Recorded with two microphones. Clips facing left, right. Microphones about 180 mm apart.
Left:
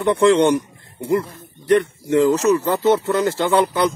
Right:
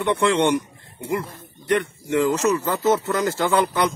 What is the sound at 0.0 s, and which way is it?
Speech, 35° left (ahead or behind).